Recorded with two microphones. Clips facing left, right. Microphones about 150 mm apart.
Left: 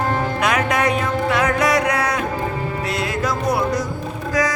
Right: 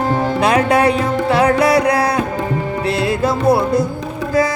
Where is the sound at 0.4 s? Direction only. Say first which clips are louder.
Right 6 dB; 30° right (ahead or behind).